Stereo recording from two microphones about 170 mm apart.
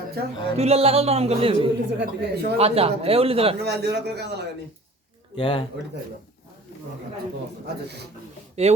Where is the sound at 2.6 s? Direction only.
35° right (ahead or behind).